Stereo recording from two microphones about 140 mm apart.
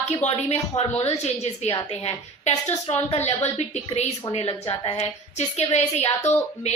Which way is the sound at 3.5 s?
50° left (ahead or behind).